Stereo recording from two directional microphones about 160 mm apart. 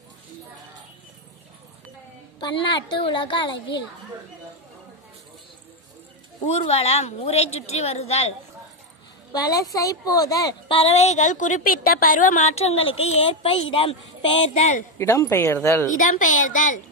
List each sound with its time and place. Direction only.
2.4 s a woman's voice: 30° left (ahead or behind)
6.4 s a woman's voice: 40° left (ahead or behind)
9.3 s a woman's voice: 25° left (ahead or behind)
10.8 s a woman's voice: 40° left (ahead or behind)
15.0 s speech: 15° left (ahead or behind)
16.0 s speech: 55° left (ahead or behind)